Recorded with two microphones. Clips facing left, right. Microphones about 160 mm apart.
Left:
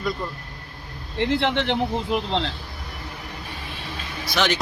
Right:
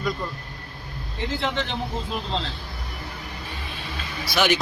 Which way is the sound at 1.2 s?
65° left (ahead or behind).